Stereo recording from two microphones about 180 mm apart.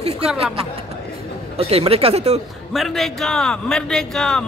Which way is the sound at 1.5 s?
35° right (ahead or behind).